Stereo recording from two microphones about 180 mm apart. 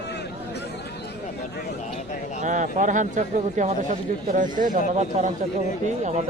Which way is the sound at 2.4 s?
45° right (ahead or behind).